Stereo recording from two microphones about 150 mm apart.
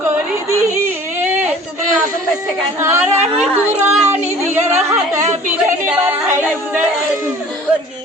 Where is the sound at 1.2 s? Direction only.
15° right (ahead or behind).